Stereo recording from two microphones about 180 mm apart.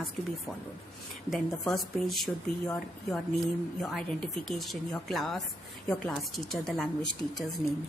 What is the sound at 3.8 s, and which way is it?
Speech, centre (ahead or behind).